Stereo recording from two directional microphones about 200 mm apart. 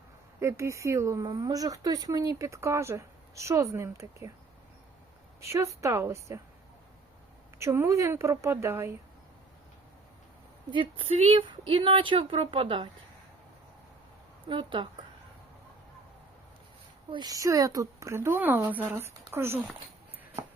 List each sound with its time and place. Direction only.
0.3 s speech: 15° right (ahead or behind)
5.4 s speech: 15° right (ahead or behind)
7.6 s speech: 15° right (ahead or behind)
10.7 s speech: 25° right (ahead or behind)
14.4 s speech: 25° right (ahead or behind)
17.1 s speech: 20° right (ahead or behind)